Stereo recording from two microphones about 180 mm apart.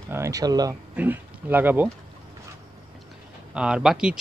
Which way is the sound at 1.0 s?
10° right (ahead or behind).